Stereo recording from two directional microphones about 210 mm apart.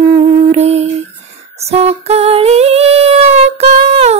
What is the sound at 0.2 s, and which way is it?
Humming, 30° right (ahead or behind).